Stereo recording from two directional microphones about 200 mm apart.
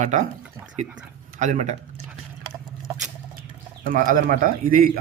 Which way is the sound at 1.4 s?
35° right (ahead or behind).